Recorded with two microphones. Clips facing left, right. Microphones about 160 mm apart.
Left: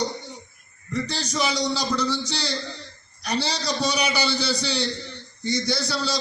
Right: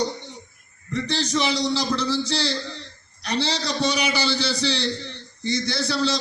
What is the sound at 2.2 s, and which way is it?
Speech, centre (ahead or behind).